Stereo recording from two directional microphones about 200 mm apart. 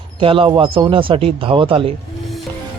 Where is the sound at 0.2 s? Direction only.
25° right (ahead or behind).